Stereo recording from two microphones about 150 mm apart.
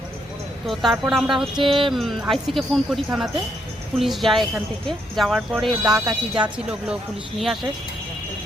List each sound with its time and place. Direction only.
0.7 s speech: centre (ahead or behind)
1.5 s music: 35° right (ahead or behind)
1.9 s speech: centre (ahead or behind)